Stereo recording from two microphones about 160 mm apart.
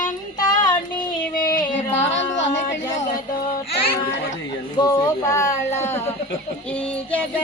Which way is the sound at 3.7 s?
35° left (ahead or behind).